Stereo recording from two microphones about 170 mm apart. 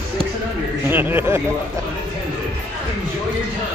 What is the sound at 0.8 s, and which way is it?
Speech, 10° right (ahead or behind).